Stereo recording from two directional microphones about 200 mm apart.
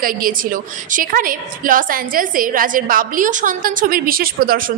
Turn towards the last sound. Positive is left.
turn(degrees=-50)  # may be behind; listen again after turning